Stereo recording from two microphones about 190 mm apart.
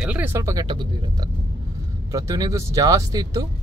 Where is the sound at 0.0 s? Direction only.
10° right (ahead or behind).